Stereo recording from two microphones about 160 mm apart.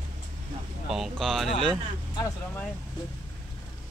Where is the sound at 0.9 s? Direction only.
Centre (ahead or behind).